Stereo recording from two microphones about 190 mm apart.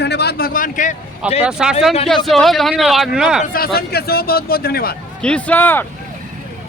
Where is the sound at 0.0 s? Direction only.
60° left (ahead or behind); by 0.9 s 45° left (ahead or behind).